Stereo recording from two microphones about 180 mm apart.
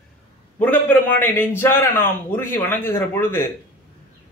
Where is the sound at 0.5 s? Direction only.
10° left (ahead or behind).